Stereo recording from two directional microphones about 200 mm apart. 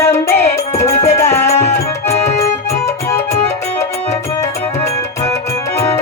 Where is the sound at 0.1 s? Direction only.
15° left (ahead or behind).